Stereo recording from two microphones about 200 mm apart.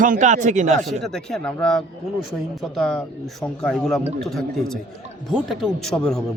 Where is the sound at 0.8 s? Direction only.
Centre (ahead or behind).